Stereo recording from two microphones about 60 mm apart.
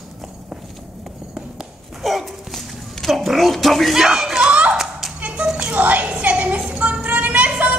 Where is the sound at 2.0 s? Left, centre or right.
Centre.